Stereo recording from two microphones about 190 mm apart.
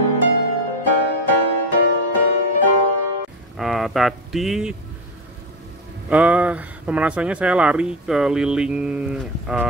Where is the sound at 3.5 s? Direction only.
Centre (ahead or behind).